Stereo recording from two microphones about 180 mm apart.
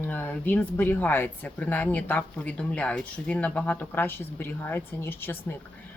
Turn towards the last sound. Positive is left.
turn(degrees=10)  # may be behind; listen again after turning